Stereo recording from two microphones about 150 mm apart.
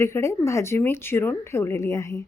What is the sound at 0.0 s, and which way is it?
A woman's voice, 20° left (ahead or behind).